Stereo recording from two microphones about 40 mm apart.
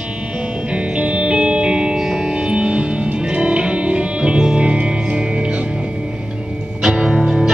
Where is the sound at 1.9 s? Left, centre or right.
Centre.